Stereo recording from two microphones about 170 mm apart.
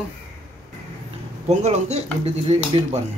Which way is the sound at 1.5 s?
40° right (ahead or behind).